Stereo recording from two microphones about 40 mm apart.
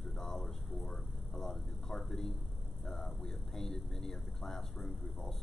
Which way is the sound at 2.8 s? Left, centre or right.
Centre.